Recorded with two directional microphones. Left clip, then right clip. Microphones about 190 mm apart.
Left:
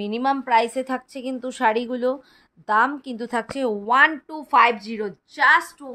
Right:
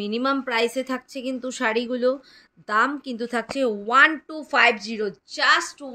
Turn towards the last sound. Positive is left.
turn(degrees=40)  # may be behind; listen again after turning